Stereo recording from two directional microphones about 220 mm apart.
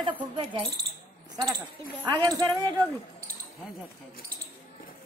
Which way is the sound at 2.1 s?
20° right (ahead or behind).